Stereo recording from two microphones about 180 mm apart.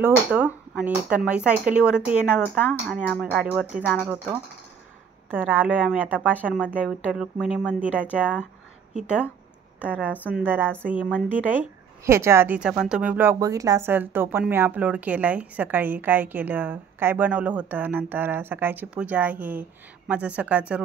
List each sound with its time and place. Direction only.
0.0 s a woman's voice: 10° right (ahead or behind)
5.3 s a woman's voice: 10° right (ahead or behind)